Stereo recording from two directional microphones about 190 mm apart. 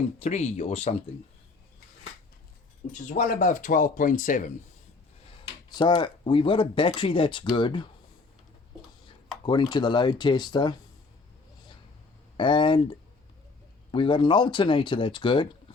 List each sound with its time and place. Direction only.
0.2 s speech: 35° left (ahead or behind)
3.1 s speech: 45° left (ahead or behind)
5.5 s speech: 20° left (ahead or behind)
9.4 s speech: 25° left (ahead or behind)
12.4 s speech: 25° left (ahead or behind)